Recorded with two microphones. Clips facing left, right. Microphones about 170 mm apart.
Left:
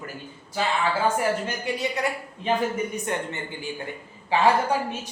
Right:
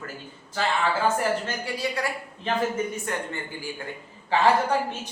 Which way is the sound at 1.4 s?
20° left (ahead or behind).